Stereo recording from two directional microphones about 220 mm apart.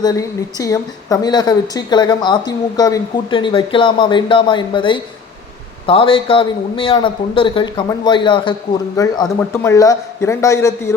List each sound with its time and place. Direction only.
0.0 s a woman's voice: 15° left (ahead or behind)